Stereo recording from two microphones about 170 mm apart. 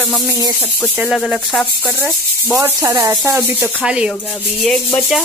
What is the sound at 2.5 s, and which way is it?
Rub, 15° right (ahead or behind).